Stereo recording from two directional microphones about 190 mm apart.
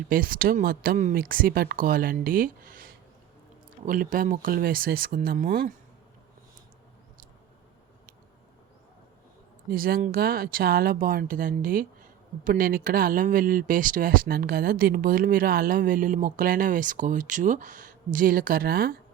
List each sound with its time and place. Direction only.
0.1 s speech: 50° right (ahead or behind)
9.6 s speech: 50° right (ahead or behind)